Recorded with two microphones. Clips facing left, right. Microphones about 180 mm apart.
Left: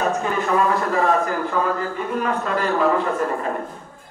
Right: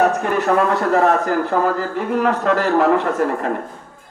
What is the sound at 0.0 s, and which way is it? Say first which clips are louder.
A man's voice: right 5 dB; 65° right (ahead or behind).